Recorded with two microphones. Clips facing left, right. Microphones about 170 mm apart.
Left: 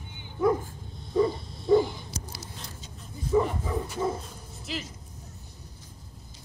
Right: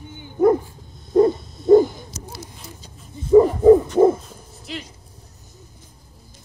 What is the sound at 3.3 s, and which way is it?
Bow-wow, 40° right (ahead or behind).